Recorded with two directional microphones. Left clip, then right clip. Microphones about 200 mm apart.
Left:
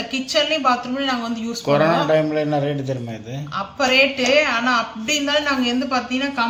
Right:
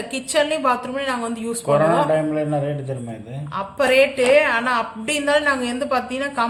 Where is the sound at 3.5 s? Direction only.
60° right (ahead or behind).